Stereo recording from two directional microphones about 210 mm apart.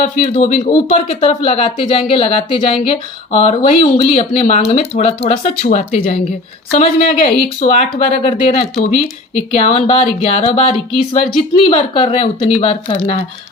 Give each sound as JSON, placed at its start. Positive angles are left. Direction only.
{"t": 0.3, "sound": "speech", "side_deg": 30}